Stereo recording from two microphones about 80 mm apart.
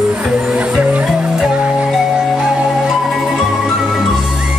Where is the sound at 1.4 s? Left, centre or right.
Centre.